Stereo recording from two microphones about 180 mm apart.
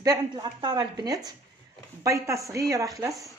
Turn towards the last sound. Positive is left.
turn(degrees=-15)  # may be behind; listen again after turning